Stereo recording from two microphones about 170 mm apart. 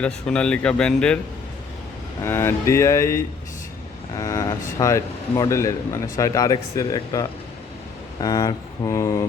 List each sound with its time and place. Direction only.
0.0 s speech: 5° left (ahead or behind)
2.2 s speech: 15° left (ahead or behind)